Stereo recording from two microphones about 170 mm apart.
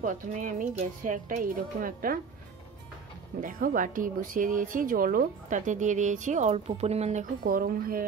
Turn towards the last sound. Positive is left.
turn(degrees=-60)  # may be behind; listen again after turning